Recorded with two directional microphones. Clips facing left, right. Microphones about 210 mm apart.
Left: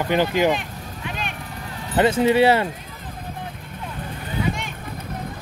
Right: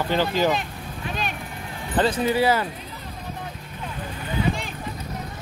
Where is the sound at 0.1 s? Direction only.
15° left (ahead or behind).